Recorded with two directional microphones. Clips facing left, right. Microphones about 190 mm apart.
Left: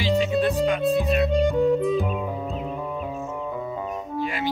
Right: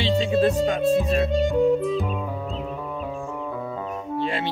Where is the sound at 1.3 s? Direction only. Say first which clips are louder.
Right 1 dB; centre (ahead or behind).